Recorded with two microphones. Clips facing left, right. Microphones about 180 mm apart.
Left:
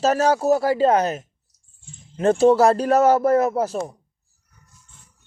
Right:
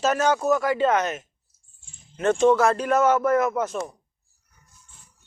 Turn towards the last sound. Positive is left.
turn(degrees=35)  # may be behind; listen again after turning